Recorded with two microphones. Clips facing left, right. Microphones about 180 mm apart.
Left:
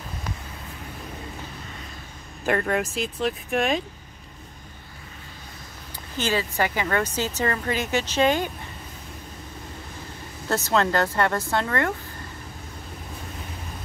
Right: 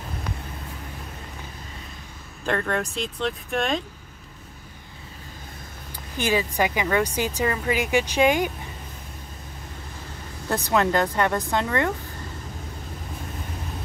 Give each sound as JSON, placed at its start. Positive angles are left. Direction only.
{"t": 2.4, "sound": "speech", "side_deg": 10}
{"t": 6.1, "sound": "speech", "side_deg": -15}
{"t": 10.5, "sound": "speech", "side_deg": -15}